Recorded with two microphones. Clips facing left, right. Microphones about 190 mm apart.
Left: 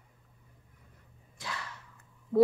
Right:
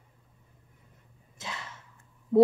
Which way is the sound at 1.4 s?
20° right (ahead or behind).